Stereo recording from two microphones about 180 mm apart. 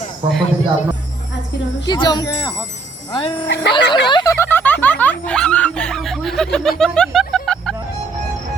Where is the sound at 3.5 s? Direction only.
80° left.